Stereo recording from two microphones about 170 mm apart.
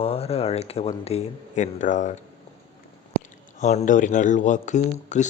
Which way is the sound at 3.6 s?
45° left (ahead or behind).